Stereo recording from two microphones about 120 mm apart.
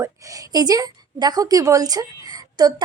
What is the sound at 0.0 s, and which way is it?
A woman's voice, 30° right (ahead or behind).